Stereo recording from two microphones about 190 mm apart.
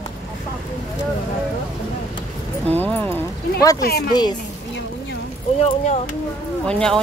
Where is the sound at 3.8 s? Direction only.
55° left (ahead or behind).